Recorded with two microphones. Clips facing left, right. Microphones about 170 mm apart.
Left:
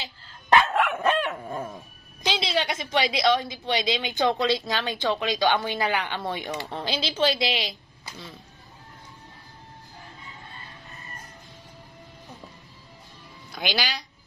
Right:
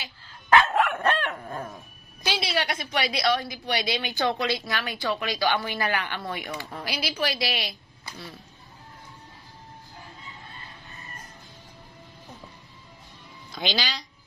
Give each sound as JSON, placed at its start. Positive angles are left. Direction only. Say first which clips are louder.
{"t": 0.7, "sound": "dog", "louder": "left 1 dB", "side_deg": 5}
{"t": 2.2, "sound": "a woman's voice", "louder": "left 2 dB", "side_deg": 25}
{"t": 13.6, "sound": "speech", "louder": "left 1 dB", "side_deg": 10}